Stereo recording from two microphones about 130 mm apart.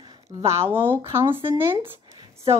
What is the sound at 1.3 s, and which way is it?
Speech, 40° right (ahead or behind).